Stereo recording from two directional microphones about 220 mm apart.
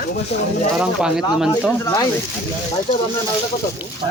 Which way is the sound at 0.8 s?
5° right (ahead or behind).